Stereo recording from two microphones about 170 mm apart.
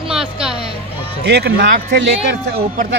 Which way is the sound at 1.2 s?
75° right (ahead or behind).